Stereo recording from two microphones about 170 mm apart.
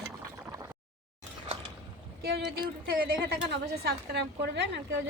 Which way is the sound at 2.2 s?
65° right (ahead or behind).